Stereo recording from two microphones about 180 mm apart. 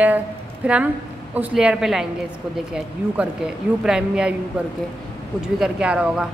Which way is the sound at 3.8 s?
5° right (ahead or behind).